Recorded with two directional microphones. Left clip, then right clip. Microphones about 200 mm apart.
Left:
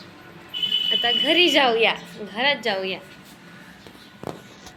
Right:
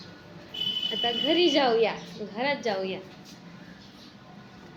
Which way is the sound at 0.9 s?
Centre (ahead or behind).